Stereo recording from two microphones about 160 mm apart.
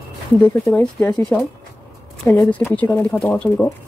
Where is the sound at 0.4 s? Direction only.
15° left (ahead or behind).